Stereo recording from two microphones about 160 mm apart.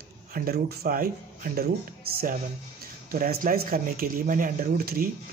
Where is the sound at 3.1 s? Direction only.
65° right (ahead or behind).